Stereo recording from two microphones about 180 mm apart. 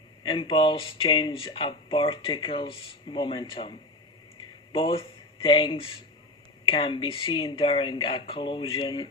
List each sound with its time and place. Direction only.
0.2 s speech: 30° left (ahead or behind)